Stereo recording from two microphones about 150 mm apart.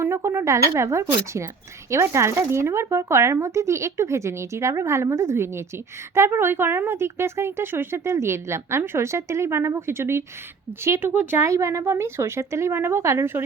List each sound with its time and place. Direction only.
0.0 s a woman's voice: 15° right (ahead or behind)